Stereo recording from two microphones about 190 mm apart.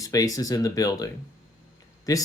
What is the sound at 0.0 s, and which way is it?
Speech, 20° left (ahead or behind).